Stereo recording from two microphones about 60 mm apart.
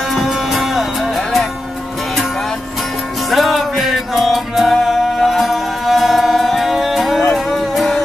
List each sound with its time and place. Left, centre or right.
0.1 s music: centre
3.3 s music: centre